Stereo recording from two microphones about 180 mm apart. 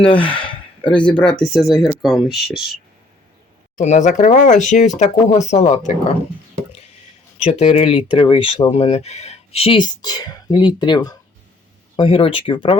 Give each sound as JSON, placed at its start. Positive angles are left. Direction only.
{"t": 0.1, "sound": "speech", "side_deg": 10}
{"t": 3.8, "sound": "speech", "side_deg": 40}
{"t": 7.4, "sound": "speech", "side_deg": 40}